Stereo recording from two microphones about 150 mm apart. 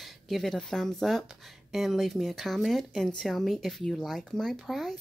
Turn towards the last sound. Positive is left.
turn(degrees=0)  # may be behind; listen again after turning